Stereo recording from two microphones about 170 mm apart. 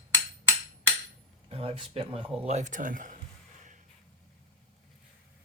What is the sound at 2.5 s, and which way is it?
Speech, 45° right (ahead or behind).